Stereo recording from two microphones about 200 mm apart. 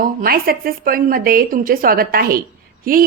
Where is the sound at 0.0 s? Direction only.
45° right (ahead or behind).